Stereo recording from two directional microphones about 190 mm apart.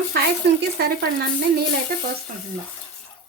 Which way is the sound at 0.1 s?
55° right (ahead or behind).